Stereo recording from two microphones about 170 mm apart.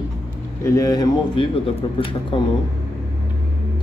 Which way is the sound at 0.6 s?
20° left (ahead or behind).